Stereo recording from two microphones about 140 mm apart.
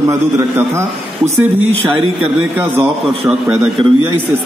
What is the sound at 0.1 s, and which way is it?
A man's voice, 20° right (ahead or behind).